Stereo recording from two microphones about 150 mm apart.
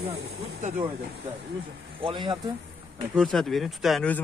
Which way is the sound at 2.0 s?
35° right (ahead or behind).